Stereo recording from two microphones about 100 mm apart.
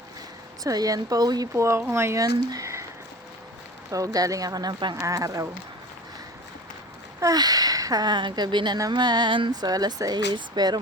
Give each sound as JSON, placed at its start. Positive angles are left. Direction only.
{"t": 0.6, "sound": "speech", "side_deg": -35}
{"t": 1.5, "sound": "speech", "side_deg": -30}
{"t": 3.9, "sound": "speech", "side_deg": -35}
{"t": 4.9, "sound": "speech", "side_deg": -30}
{"t": 7.2, "sound": "speech", "side_deg": -40}